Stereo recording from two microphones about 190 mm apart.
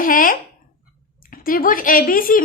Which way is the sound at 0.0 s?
45° left (ahead or behind).